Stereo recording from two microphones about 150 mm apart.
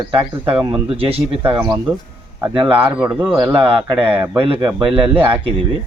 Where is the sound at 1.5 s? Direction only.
30° right (ahead or behind).